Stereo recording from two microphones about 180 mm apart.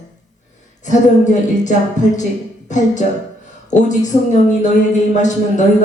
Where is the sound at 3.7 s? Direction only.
40° left (ahead or behind).